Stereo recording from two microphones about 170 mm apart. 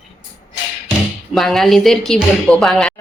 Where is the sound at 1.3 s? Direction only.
Centre (ahead or behind).